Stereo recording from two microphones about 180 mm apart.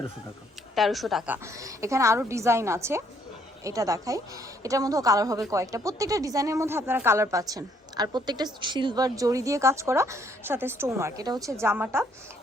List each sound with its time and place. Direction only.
0.8 s speech: centre (ahead or behind)
1.5 s a woman's voice: 15° right (ahead or behind)